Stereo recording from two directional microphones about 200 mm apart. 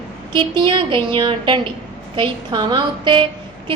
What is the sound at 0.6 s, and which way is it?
A woman's voice, 25° right (ahead or behind).